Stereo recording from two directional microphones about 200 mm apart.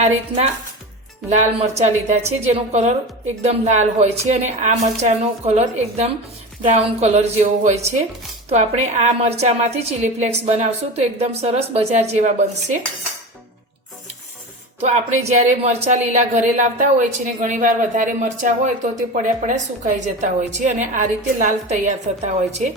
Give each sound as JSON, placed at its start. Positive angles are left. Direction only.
{"t": 0.0, "sound": "speech", "side_deg": -35}
{"t": 14.8, "sound": "speech", "side_deg": -35}